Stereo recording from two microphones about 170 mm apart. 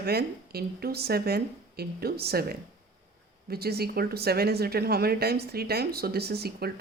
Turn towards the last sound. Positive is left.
turn(degrees=-70)  # may be behind; listen again after turning